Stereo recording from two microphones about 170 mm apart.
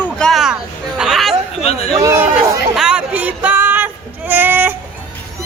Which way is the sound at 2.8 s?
5° right (ahead or behind).